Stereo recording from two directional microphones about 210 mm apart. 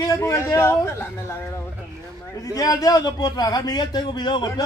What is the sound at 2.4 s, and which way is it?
A man's voice, 15° left (ahead or behind).